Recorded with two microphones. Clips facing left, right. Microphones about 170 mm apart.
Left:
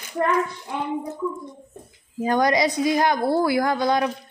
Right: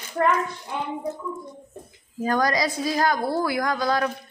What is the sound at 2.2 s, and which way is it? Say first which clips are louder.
A woman's voice: left 3 dB; 20° left (ahead or behind).